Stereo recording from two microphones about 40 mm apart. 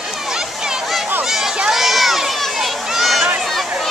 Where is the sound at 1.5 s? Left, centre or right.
Centre.